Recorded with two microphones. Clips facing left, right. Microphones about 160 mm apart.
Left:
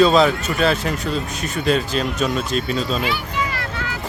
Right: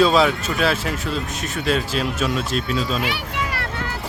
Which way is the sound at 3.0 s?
70° right (ahead or behind).